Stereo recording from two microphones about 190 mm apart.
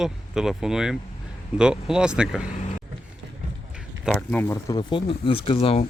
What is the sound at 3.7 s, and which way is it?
Speech, 5° left (ahead or behind).